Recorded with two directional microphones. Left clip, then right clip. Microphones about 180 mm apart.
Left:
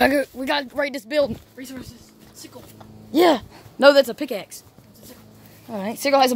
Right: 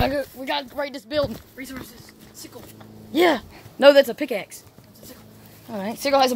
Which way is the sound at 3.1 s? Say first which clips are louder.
Left 2 dB; 60° left (ahead or behind).